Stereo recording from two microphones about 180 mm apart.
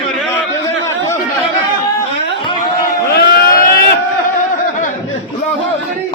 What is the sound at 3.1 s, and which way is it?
Vehicle, 60° left (ahead or behind).